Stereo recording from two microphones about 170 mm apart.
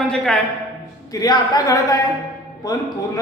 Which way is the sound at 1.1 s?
25° left (ahead or behind).